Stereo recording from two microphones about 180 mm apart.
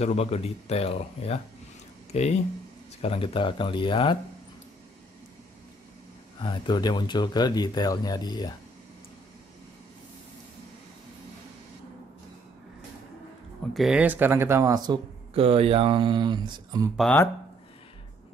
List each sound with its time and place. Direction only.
0.0 s speech: 35° left (ahead or behind)
6.4 s speech: 25° left (ahead or behind)
13.7 s speech: 5° right (ahead or behind); by 16.9 s 25° right (ahead or behind)
16.9 s speech: centre (ahead or behind)